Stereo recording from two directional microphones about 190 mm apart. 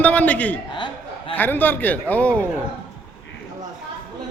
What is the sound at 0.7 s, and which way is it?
Chuckle, 25° left (ahead or behind).